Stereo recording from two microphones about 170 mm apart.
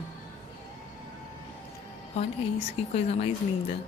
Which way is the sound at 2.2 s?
35° left (ahead or behind).